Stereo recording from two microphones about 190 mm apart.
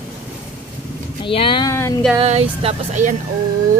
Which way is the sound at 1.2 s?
25° left (ahead or behind).